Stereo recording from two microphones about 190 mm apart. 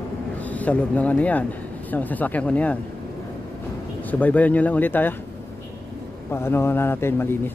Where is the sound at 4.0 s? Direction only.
10° left (ahead or behind).